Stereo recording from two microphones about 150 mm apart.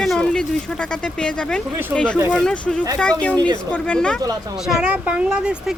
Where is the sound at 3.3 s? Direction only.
30° right (ahead or behind).